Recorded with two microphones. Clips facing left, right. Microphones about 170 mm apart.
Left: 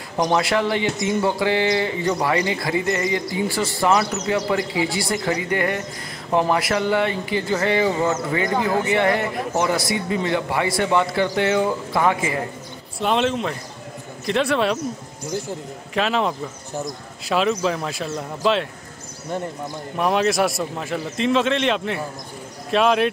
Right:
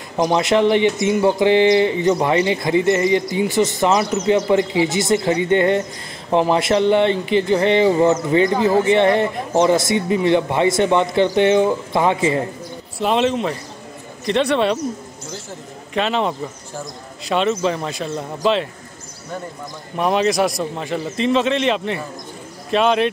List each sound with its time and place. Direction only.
0.2 s speech: 20° right (ahead or behind)
13.0 s a man's voice: centre (ahead or behind)
15.9 s a man's voice: centre (ahead or behind)
20.0 s a man's voice: centre (ahead or behind)